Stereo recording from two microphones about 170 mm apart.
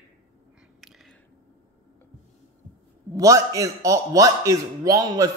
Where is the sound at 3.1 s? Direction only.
20° right (ahead or behind).